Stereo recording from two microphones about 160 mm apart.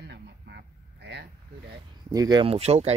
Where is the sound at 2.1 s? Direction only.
25° right (ahead or behind); by 2.9 s 40° right (ahead or behind).